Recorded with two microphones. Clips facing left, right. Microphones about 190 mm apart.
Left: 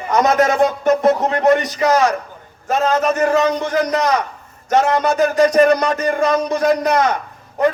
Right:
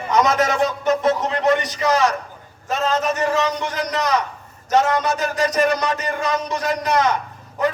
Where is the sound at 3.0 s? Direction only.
50° left (ahead or behind).